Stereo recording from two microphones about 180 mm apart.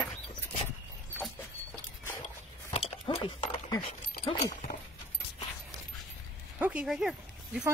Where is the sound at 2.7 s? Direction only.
30° left (ahead or behind).